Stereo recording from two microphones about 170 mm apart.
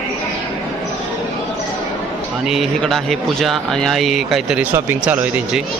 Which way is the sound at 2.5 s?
Centre (ahead or behind).